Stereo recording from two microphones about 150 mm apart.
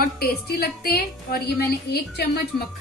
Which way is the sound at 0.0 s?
90° left.